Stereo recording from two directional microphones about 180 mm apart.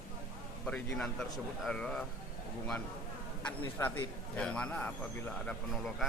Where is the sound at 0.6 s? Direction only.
5° left (ahead or behind).